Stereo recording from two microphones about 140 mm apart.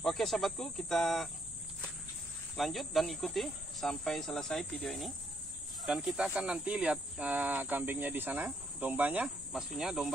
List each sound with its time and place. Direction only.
0.0 s speech: centre (ahead or behind)
2.5 s speech: centre (ahead or behind)